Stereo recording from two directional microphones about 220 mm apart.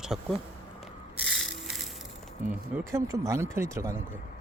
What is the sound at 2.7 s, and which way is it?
Speech, 15° right (ahead or behind).